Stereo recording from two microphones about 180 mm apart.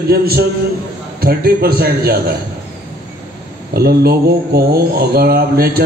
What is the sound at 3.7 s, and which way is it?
Speech, 60° right (ahead or behind).